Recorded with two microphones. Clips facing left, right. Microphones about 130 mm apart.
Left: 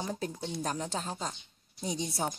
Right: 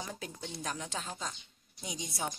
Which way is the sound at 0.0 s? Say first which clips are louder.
Left 6 dB; 30° left (ahead or behind).